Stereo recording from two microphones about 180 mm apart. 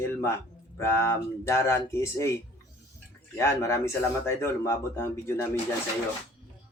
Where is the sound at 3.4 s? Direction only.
15° left (ahead or behind).